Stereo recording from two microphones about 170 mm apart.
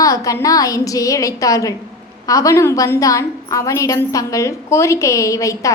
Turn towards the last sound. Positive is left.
turn(degrees=20)  # may be behind; listen again after turning